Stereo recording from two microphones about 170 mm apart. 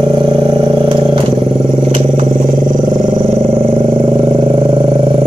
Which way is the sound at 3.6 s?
30° right (ahead or behind).